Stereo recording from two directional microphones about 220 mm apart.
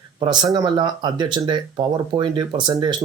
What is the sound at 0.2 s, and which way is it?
Speech, 20° right (ahead or behind).